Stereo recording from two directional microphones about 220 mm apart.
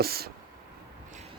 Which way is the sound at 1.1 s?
30° right (ahead or behind).